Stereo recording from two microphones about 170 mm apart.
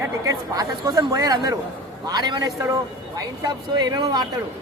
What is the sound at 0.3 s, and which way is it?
Speech, 20° right (ahead or behind).